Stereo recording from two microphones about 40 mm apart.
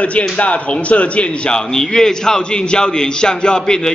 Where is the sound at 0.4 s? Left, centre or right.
Left.